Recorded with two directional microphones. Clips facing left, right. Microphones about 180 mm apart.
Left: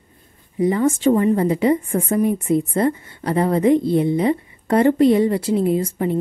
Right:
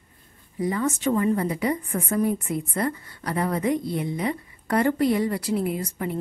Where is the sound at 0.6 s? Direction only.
25° left (ahead or behind).